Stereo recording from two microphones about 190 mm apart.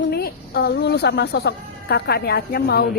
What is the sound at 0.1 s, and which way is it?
A woman's voice, 55° left (ahead or behind).